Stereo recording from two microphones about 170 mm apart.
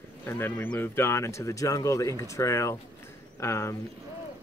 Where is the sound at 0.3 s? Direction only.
10° left (ahead or behind).